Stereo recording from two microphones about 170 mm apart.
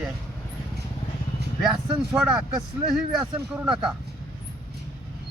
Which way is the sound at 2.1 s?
5° right (ahead or behind).